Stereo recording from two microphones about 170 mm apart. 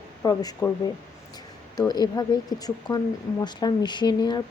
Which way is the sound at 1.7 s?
20° left (ahead or behind).